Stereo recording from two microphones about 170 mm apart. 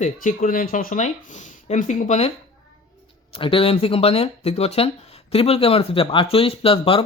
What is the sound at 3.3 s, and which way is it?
Speech, 30° left (ahead or behind).